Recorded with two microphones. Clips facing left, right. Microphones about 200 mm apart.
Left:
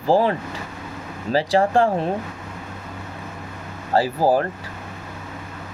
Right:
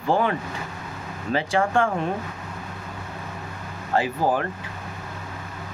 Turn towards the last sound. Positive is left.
turn(degrees=35)  # may be behind; listen again after turning